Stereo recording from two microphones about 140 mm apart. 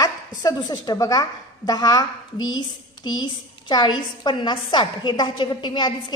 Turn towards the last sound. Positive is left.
turn(degrees=35)  # may be behind; listen again after turning